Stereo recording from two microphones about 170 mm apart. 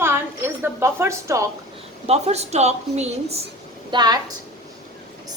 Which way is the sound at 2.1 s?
40° right (ahead or behind).